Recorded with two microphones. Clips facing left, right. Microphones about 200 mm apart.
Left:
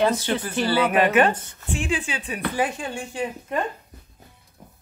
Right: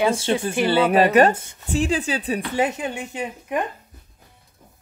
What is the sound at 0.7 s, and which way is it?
Speech, 30° right (ahead or behind).